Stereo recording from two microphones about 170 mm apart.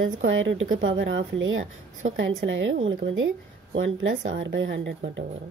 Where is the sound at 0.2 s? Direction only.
90° right.